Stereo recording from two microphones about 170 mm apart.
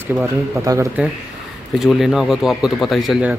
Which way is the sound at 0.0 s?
15° right (ahead or behind).